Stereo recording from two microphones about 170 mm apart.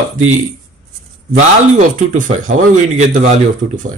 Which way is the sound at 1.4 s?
45° right (ahead or behind).